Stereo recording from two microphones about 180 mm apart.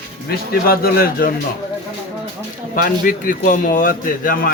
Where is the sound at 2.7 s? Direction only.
50° left (ahead or behind).